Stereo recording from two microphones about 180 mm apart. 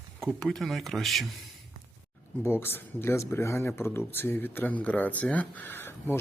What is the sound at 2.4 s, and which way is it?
Speech, 10° left (ahead or behind).